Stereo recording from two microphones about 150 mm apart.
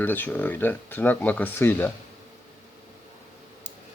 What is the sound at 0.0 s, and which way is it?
Speech, 10° left (ahead or behind).